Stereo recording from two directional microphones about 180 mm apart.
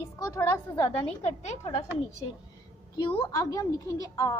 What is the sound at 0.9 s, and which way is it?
Speech, 40° left (ahead or behind).